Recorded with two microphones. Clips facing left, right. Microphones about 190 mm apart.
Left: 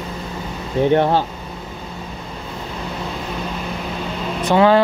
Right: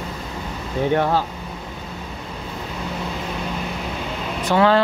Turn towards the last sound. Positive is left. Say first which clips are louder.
# left 3 dB
turn(degrees=20)  # may be behind; listen again after turning